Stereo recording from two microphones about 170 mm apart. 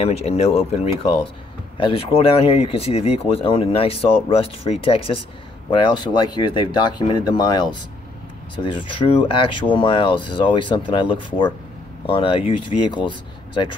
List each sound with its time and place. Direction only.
0.0 s speech: 35° left (ahead or behind)
8.6 s speech: 30° left (ahead or behind)